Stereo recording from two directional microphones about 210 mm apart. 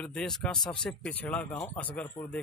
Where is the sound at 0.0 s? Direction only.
5° left (ahead or behind).